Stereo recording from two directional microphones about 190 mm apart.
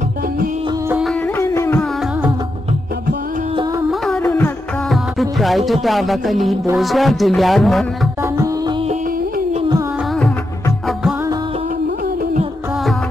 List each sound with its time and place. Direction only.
0.8 s music: 5° right (ahead or behind)
1.2 s a sound: 15° left (ahead or behind)
4.0 s music: 5° left (ahead or behind)
6.8 s speech: centre (ahead or behind)
8.2 s music: 15° right (ahead or behind)
9.5 s carnatic music: 30° right (ahead or behind)